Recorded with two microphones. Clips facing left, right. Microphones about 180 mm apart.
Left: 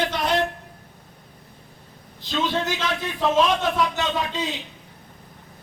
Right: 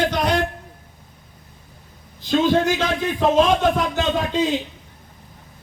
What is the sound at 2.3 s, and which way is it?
A man's voice, 45° right (ahead or behind).